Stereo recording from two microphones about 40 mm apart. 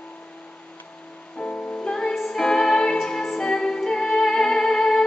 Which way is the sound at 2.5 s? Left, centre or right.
Centre.